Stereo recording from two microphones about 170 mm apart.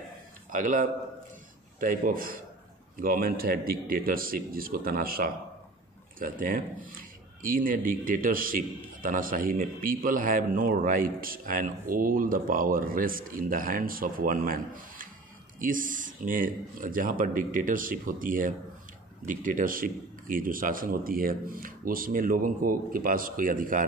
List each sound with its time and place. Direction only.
0.5 s a man's voice: 50° right (ahead or behind)